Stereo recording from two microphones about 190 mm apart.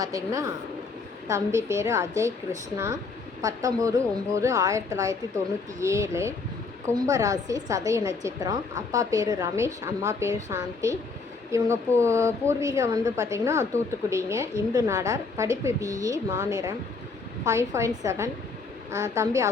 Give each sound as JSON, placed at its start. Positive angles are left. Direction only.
{"t": 0.0, "sound": "a woman's voice", "side_deg": -20}